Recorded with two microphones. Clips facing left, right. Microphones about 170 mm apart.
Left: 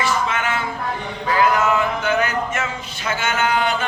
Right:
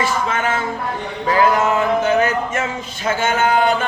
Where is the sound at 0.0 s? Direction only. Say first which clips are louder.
Right 2 dB; 40° right (ahead or behind).